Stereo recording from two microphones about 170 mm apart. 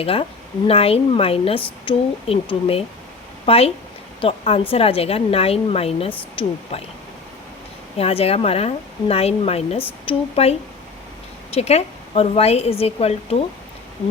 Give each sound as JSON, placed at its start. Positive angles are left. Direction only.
{"t": 0.0, "sound": "speech", "side_deg": 35}
{"t": 7.9, "sound": "speech", "side_deg": 35}
{"t": 11.5, "sound": "speech", "side_deg": 40}